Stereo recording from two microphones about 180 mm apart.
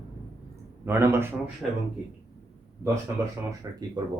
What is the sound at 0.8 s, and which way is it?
Speech, 15° right (ahead or behind).